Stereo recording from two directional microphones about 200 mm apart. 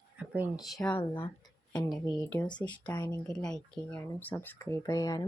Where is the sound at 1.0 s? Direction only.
25° left (ahead or behind).